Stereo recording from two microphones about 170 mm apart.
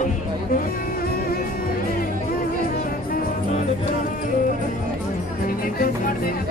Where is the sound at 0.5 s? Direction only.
65° left (ahead or behind).